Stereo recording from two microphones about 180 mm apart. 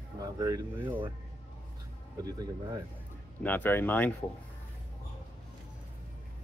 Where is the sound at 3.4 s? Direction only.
10° left (ahead or behind).